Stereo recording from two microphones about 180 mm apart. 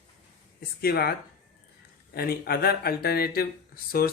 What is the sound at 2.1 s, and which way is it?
Speech, 60° left (ahead or behind).